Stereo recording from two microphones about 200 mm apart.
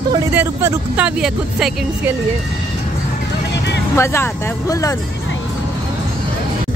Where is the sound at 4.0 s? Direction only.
15° left (ahead or behind).